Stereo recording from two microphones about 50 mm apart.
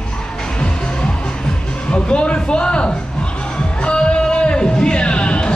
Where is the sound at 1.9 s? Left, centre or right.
Left.